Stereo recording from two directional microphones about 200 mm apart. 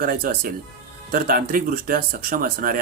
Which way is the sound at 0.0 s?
50° right (ahead or behind).